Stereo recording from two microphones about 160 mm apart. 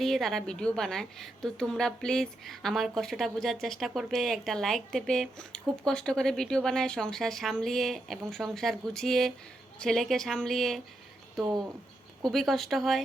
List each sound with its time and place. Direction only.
0.0 s a woman's voice: centre (ahead or behind)